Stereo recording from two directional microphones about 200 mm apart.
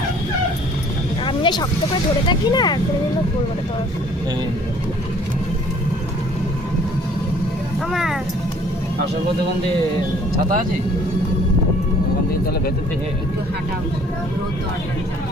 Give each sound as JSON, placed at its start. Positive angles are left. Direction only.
{"t": 1.2, "sound": "a sound", "side_deg": 25}
{"t": 2.2, "sound": "speech", "side_deg": 20}
{"t": 7.9, "sound": "speech", "side_deg": 0}
{"t": 10.3, "sound": "speech", "side_deg": -45}